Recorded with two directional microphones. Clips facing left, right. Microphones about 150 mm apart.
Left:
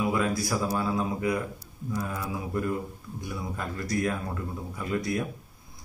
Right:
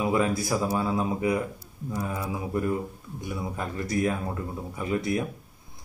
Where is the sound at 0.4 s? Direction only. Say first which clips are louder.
Right 2 dB; 15° right (ahead or behind).